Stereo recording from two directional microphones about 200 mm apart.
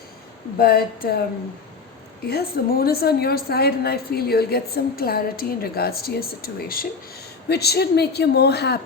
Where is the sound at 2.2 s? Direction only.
50° left (ahead or behind).